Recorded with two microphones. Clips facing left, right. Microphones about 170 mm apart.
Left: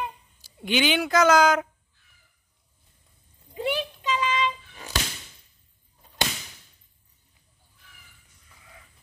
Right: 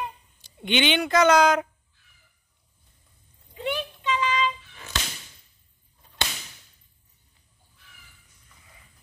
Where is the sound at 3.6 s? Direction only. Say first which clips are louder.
Left 2 dB; 40° left (ahead or behind).